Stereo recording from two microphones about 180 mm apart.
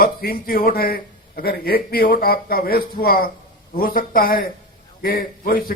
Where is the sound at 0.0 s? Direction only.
55° left (ahead or behind).